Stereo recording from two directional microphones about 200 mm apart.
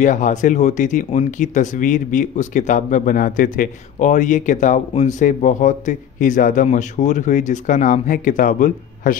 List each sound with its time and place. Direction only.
0.0 s speech: 40° left (ahead or behind)